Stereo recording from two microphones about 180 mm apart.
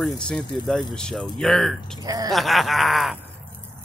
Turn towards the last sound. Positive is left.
turn(degrees=0)  # may be behind; listen again after turning